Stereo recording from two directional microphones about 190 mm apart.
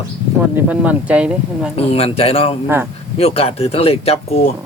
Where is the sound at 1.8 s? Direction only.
30° left (ahead or behind).